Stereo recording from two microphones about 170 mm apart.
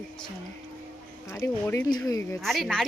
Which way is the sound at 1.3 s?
15° left (ahead or behind).